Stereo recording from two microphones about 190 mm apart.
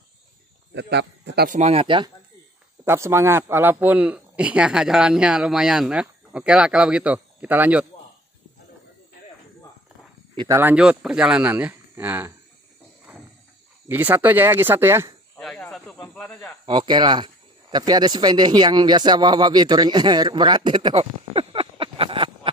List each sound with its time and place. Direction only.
0.7 s speech: 65° right (ahead or behind)
1.6 s speech: 30° right (ahead or behind)
2.8 s speech: 15° right (ahead or behind)
10.3 s speech: 20° right (ahead or behind)
10.6 s speech: 5° right (ahead or behind)
13.8 s speech: 10° right (ahead or behind)
15.3 s snake: 5° left (ahead or behind)
16.6 s speech: 25° right (ahead or behind)